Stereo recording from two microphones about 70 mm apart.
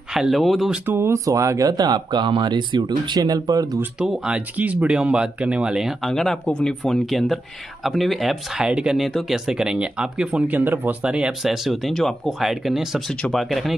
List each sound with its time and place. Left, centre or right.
0.1 s speech: centre
0.8 s speech: right
1.2 s speech: right
3.2 s speech: right
4.3 s speech: right; by 6.1 s centre
6.4 s speech: centre
8.6 s speech: centre
10.5 s speech: right
11.1 s speech: centre
11.6 s speech: centre